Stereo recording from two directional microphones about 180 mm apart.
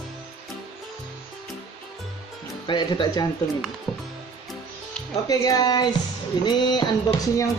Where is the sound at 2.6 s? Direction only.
25° left (ahead or behind).